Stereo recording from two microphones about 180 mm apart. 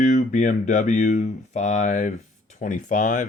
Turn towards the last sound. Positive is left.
turn(degrees=45)  # may be behind; listen again after turning